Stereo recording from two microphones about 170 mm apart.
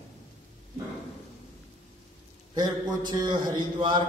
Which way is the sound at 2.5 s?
25° right (ahead or behind).